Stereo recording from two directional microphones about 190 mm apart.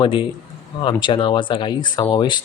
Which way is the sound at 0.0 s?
25° left (ahead or behind).